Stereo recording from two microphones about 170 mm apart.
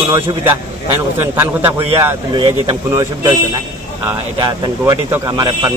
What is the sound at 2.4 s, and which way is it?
Speech, 30° right (ahead or behind).